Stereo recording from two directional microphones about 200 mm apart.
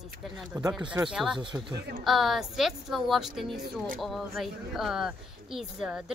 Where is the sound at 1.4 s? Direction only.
25° right (ahead or behind).